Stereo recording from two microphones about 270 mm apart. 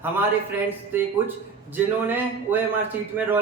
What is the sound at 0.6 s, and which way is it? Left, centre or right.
A man's voice, centre.